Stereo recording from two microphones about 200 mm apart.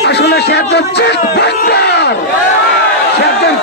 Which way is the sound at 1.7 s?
55° left (ahead or behind).